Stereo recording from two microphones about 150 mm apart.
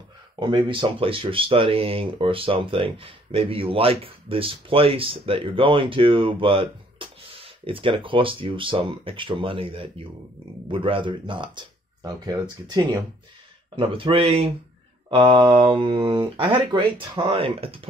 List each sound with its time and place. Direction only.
0.4 s speech: 30° right (ahead or behind)